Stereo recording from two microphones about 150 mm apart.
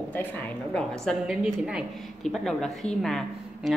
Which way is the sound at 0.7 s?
5° left (ahead or behind).